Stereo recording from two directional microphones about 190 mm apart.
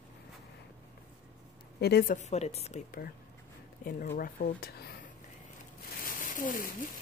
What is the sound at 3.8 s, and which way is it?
Speech, 50° left (ahead or behind).